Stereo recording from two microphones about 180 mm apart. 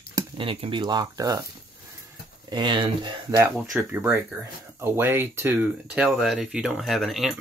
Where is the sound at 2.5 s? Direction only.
25° right (ahead or behind).